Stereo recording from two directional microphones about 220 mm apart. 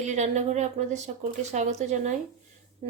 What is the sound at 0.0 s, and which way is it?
Speech, 35° right (ahead or behind).